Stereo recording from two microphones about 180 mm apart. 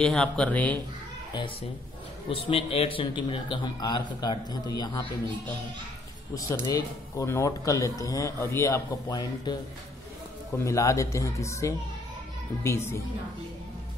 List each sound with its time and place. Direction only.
0.0 s speech: 5° left (ahead or behind)
2.2 s a man's voice: 30° left (ahead or behind)
6.3 s speech: 20° left (ahead or behind)
10.6 s speech: 15° left (ahead or behind)